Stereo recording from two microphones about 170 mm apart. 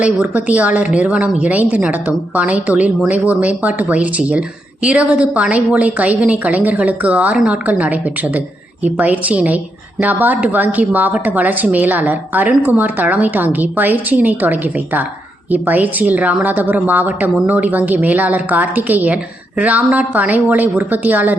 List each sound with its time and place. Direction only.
0.0 s a woman's voice: 5° right (ahead or behind)